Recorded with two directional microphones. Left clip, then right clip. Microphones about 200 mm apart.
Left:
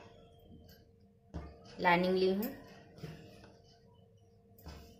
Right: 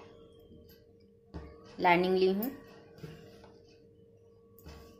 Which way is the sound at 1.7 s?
35° right (ahead or behind).